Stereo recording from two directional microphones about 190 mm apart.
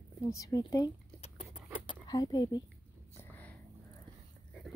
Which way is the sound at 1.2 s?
35° left (ahead or behind).